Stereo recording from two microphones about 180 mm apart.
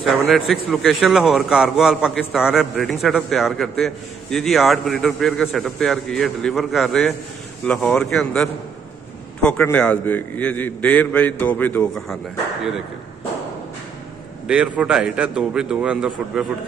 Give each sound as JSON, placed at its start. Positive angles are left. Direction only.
{"t": 0.0, "sound": "a man's voice", "side_deg": 0}
{"t": 14.5, "sound": "a man's voice", "side_deg": -5}